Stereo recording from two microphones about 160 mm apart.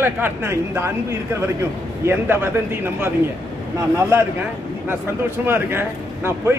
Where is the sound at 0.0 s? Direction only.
15° right (ahead or behind).